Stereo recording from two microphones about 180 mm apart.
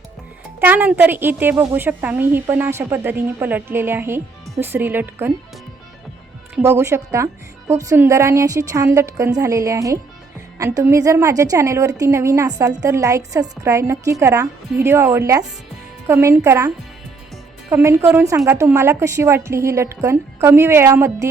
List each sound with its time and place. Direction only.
0.6 s a woman's voice: 10° right (ahead or behind)
6.6 s a woman's voice: 15° right (ahead or behind)